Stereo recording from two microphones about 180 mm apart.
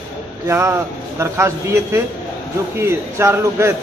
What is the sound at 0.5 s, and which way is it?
Speech, 15° right (ahead or behind).